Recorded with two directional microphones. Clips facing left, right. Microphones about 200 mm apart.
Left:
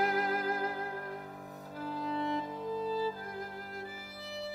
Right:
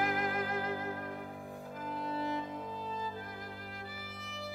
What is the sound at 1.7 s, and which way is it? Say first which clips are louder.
Violin: left 3 dB; 35° left (ahead or behind).